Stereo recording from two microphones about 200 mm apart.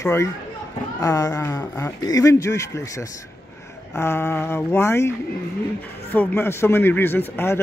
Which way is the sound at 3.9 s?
10° left (ahead or behind).